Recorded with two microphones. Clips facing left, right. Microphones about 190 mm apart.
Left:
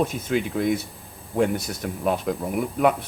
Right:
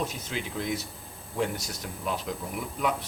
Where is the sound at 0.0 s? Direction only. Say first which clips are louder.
Left 9 dB; 55° left (ahead or behind).